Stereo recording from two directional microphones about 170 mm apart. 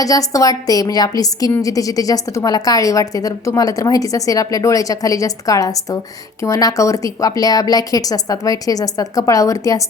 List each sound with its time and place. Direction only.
0.0 s a woman's voice: 20° left (ahead or behind)